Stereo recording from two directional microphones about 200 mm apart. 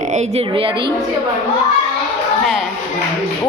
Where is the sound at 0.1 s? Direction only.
30° right (ahead or behind).